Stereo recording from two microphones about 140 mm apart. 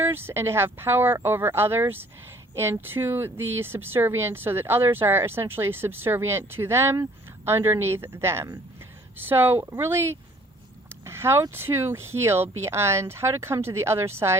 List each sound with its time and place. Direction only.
0.0 s speech: 15° right (ahead or behind)